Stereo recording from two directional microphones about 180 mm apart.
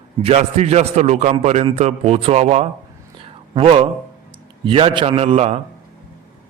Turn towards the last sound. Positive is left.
turn(degrees=-35)  # may be behind; listen again after turning